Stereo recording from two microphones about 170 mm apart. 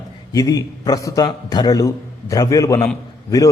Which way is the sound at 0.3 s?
20° left (ahead or behind).